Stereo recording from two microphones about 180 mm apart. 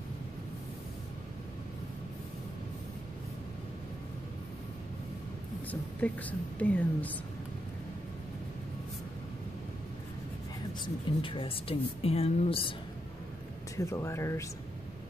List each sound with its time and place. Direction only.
5.7 s speech: 10° left (ahead or behind)
10.7 s speech: 25° left (ahead or behind)
13.7 s speech: 15° left (ahead or behind)